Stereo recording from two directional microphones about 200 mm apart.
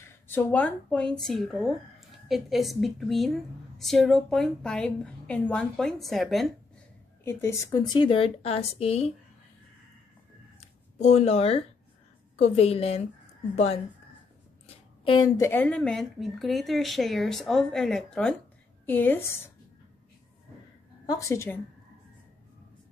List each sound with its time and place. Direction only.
0.0 s speech: 10° left (ahead or behind)
7.2 s a woman's voice: 15° left (ahead or behind); by 9.1 s 30° left (ahead or behind)
11.0 s speech: 35° left (ahead or behind)
15.0 s a woman's voice: 20° left (ahead or behind)
21.1 s a woman's voice: 15° left (ahead or behind)